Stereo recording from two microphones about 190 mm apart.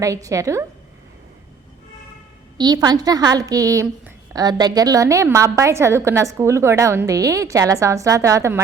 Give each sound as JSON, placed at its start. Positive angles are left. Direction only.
{"t": 0.0, "sound": "a woman's voice", "side_deg": -15}
{"t": 2.6, "sound": "a woman's voice", "side_deg": -20}